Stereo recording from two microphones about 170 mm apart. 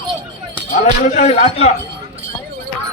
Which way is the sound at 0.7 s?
45° left (ahead or behind).